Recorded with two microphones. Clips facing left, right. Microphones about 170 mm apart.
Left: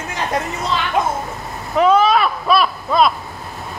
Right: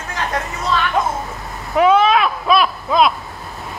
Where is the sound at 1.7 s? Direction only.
5° right (ahead or behind).